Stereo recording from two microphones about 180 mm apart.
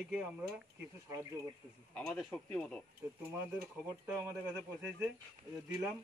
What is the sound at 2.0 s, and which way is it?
Speech, 5° left (ahead or behind).